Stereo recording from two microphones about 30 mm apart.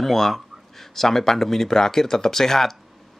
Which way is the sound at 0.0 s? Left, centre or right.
Centre.